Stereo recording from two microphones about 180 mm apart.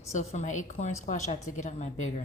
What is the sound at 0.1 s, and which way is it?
A woman's voice, 40° left (ahead or behind).